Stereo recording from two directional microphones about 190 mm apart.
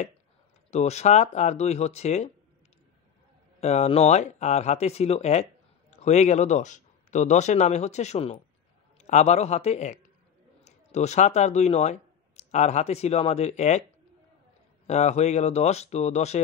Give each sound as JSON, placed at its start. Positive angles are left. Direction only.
{"t": 0.7, "sound": "speech", "side_deg": 35}
{"t": 3.6, "sound": "speech", "side_deg": 35}
{"t": 14.9, "sound": "speech", "side_deg": 35}